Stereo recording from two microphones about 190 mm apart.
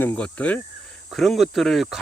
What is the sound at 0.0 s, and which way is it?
Speech, 5° left (ahead or behind).